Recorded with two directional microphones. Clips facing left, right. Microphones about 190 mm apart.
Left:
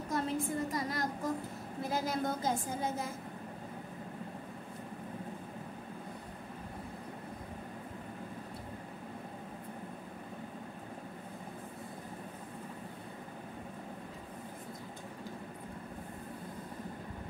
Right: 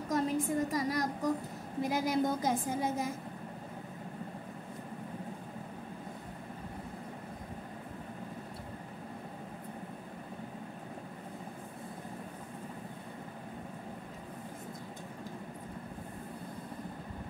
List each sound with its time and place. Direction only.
0.1 s a woman's voice: 15° right (ahead or behind)